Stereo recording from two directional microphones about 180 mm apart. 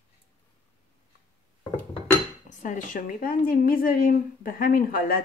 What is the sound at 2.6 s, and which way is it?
A woman's voice, 45° left (ahead or behind).